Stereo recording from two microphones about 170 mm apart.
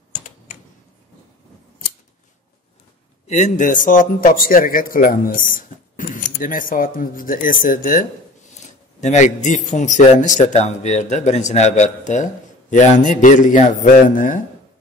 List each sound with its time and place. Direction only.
3.3 s a man's voice: 45° left (ahead or behind)